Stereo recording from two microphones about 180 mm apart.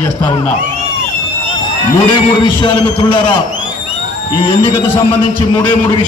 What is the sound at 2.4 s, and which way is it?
Music, 25° left (ahead or behind).